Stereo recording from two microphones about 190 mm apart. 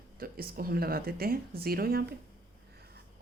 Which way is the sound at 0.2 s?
50° right (ahead or behind).